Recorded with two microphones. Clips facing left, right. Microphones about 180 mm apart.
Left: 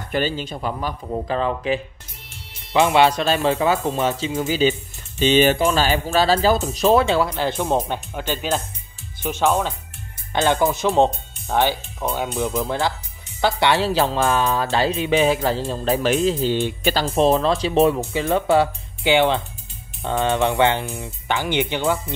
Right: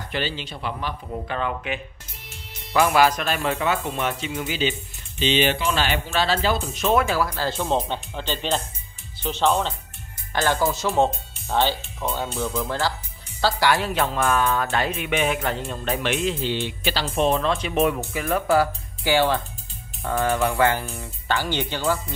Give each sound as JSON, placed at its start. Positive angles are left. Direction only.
{"t": 0.1, "sound": "a woman's voice", "side_deg": 45}
{"t": 10.3, "sound": "a woman's voice", "side_deg": 20}
{"t": 17.1, "sound": "speech", "side_deg": 35}